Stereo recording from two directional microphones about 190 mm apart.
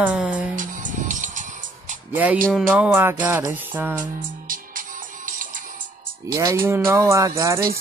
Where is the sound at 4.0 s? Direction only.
45° right (ahead or behind).